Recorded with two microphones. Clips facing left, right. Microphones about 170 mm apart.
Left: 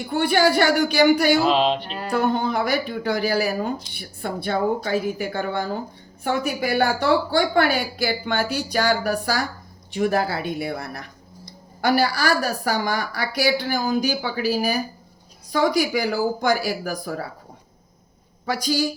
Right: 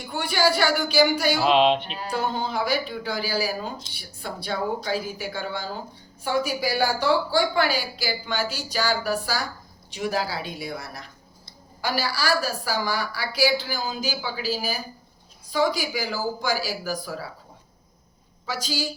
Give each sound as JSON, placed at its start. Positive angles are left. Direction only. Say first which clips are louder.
{"t": 0.1, "sound": "speech", "louder": "left 5 dB", "side_deg": 55}
{"t": 1.5, "sound": "music", "louder": "right 1 dB", "side_deg": 0}
{"t": 1.8, "sound": "speech", "louder": "left 5 dB", "side_deg": 50}